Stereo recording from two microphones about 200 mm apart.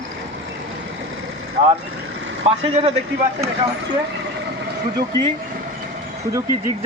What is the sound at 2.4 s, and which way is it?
Speech, 35° right (ahead or behind).